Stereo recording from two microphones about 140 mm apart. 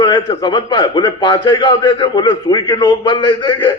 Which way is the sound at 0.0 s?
30° left (ahead or behind).